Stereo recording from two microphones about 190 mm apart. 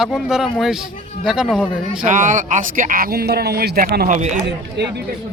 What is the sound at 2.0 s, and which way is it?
Speech, 40° right (ahead or behind).